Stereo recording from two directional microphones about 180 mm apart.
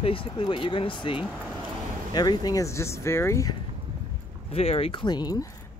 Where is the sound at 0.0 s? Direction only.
30° left (ahead or behind).